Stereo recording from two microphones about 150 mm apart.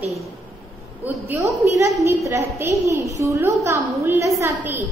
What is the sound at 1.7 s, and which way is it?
A woman's voice, 20° right (ahead or behind).